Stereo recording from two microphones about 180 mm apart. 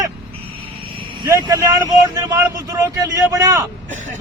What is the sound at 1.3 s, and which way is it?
A man's voice, 20° right (ahead or behind).